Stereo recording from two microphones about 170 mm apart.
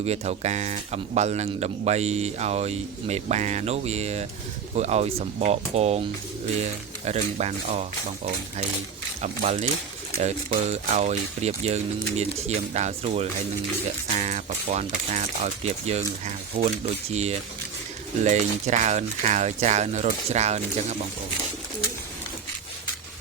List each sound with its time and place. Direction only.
0.0 s speech: 40° right (ahead or behind)